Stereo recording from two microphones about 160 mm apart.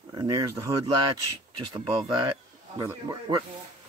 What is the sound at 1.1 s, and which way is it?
Speech, 30° right (ahead or behind).